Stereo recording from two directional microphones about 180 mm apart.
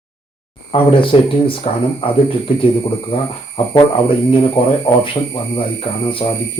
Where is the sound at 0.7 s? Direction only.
30° left (ahead or behind).